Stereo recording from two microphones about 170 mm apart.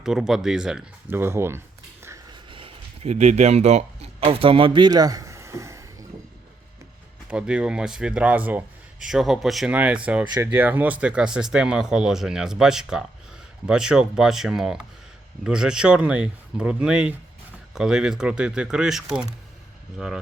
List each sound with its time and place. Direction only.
0.0 s speech: 5° right (ahead or behind)
2.5 s a sound: 30° right (ahead or behind)
7.3 s a man's voice: 5° right (ahead or behind)